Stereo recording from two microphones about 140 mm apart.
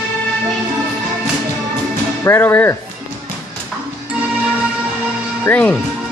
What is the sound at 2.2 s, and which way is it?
Music, 15° left (ahead or behind).